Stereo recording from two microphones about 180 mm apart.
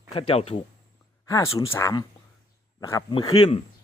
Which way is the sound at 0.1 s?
30° left (ahead or behind).